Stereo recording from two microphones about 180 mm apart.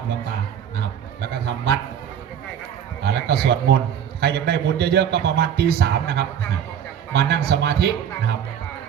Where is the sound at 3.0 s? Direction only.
65° right (ahead or behind).